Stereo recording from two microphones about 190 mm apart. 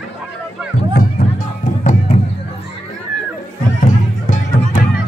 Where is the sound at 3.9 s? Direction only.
40° left (ahead or behind).